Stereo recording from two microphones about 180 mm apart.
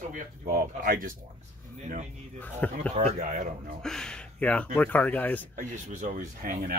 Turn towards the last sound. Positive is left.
turn(degrees=-45)  # may be behind; listen again after turning